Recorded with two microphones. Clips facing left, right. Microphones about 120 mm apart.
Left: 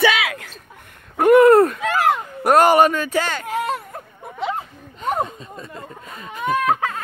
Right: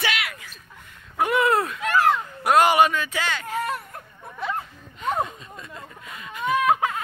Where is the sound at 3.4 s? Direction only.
25° left (ahead or behind).